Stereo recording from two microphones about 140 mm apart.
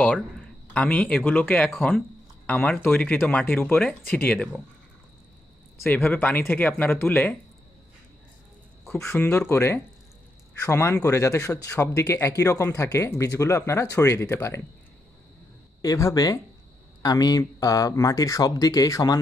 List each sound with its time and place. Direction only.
0.7 s speech: 10° left (ahead or behind)
5.9 s speech: 10° left (ahead or behind)
8.9 s speech: 20° left (ahead or behind)
15.8 s speech: 25° left (ahead or behind)